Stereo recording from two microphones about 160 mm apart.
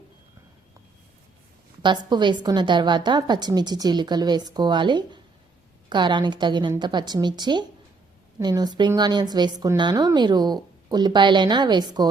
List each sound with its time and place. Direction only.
2.0 s a woman's voice: 30° right (ahead or behind)